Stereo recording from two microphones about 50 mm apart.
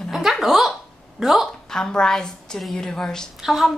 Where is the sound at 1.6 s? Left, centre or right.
Centre.